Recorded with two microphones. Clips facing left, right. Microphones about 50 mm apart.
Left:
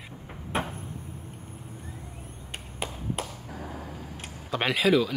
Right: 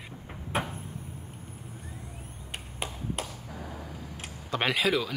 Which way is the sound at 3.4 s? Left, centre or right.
Left.